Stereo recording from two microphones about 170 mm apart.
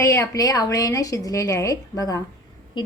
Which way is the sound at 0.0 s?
20° left (ahead or behind).